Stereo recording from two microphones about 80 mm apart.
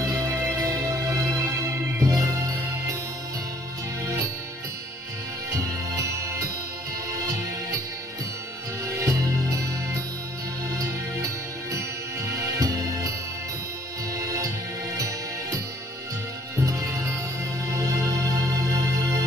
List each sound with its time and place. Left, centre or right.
0.0 s music: right
4.0 s music: right
5.5 s music: right
8.8 s music: right
14.1 s music: right